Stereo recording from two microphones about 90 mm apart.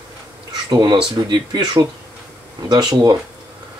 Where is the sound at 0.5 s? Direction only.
60° right (ahead or behind).